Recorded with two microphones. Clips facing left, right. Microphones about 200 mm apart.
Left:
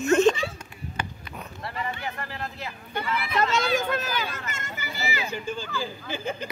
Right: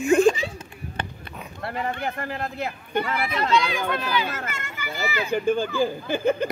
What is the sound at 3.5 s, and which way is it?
Speech, 45° left (ahead or behind).